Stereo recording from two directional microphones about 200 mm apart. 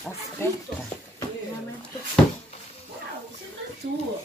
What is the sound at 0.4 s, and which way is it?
Speech, 15° left (ahead or behind).